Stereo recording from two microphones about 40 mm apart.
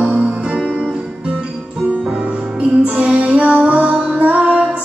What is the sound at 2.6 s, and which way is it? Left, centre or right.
Music, right.